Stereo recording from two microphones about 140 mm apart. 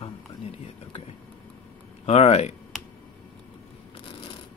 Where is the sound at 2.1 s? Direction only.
50° left (ahead or behind).